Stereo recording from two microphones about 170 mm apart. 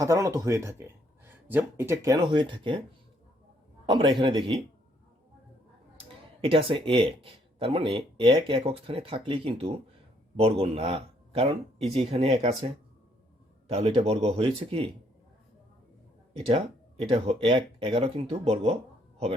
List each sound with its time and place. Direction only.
0.0 s speech: 15° right (ahead or behind)
3.8 s speech: 30° right (ahead or behind)
6.4 s speech: 30° right (ahead or behind)
17.1 s speech: 35° right (ahead or behind)